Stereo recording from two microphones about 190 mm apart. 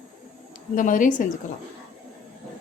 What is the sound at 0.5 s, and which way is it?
Speech, 45° left (ahead or behind).